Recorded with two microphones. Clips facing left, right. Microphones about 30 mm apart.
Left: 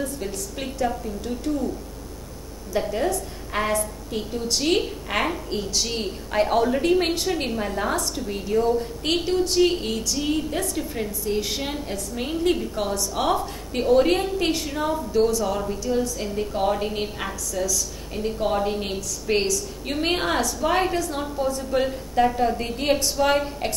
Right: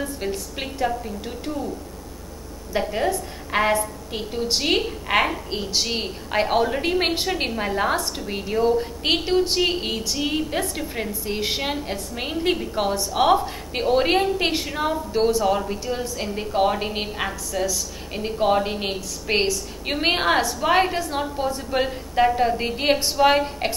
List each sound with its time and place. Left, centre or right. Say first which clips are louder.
0.0 s a woman's voice: right 2 dB; right
2.9 s a woman's voice: right 1 dB; right